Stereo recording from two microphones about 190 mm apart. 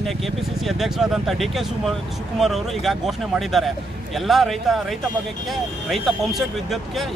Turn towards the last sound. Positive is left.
turn(degrees=0)  # may be behind; listen again after turning